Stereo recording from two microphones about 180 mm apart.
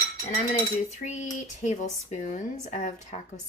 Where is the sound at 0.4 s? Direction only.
45° left (ahead or behind).